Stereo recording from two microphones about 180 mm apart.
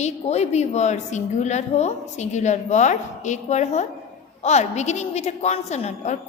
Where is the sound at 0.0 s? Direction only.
35° left (ahead or behind).